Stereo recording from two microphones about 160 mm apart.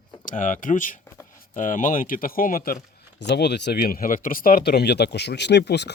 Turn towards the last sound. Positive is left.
turn(degrees=90)